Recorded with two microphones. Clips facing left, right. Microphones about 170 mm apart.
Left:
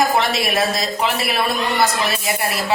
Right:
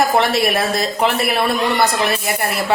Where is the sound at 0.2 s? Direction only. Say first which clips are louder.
Right 3 dB; 60° right (ahead or behind).